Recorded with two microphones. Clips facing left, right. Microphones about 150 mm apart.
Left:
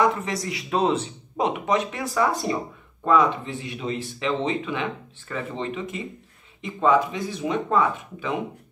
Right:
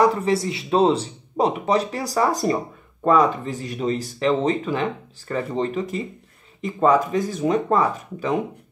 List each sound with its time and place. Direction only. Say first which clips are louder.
0.0 s speech: right 4 dB; 35° right (ahead or behind)